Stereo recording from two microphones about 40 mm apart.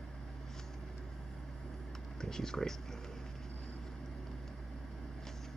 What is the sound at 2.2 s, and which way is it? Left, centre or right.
Speech, centre.